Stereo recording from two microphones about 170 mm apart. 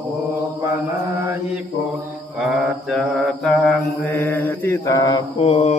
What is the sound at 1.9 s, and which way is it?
Mantra, 5° right (ahead or behind).